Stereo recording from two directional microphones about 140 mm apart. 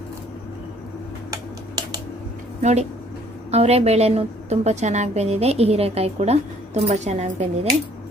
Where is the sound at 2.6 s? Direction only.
55° right (ahead or behind).